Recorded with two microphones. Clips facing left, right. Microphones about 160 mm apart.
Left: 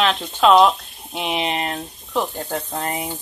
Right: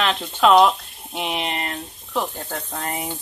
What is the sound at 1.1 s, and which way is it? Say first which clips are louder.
Speech: left 3 dB; 20° left (ahead or behind).